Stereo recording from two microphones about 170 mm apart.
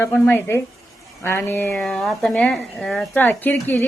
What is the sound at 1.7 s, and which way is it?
Speech, centre (ahead or behind).